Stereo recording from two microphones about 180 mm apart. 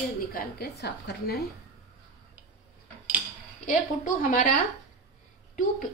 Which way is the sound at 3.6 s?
45° left (ahead or behind).